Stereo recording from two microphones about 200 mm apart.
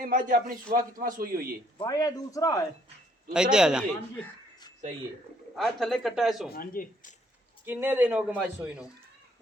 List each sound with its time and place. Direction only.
0.0 s a man's voice: 45° right (ahead or behind)
1.8 s speech: 20° left (ahead or behind)
3.3 s speech: 5° right (ahead or behind)
5.5 s speech: centre (ahead or behind)
6.5 s speech: 45° left (ahead or behind)
7.6 s a man's voice: 10° right (ahead or behind)